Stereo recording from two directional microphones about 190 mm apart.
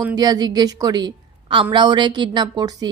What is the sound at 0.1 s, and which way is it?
A woman's voice, 20° right (ahead or behind).